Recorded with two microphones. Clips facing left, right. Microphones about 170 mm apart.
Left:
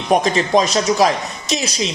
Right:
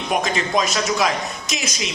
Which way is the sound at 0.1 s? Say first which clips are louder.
Left 7 dB; 35° left (ahead or behind).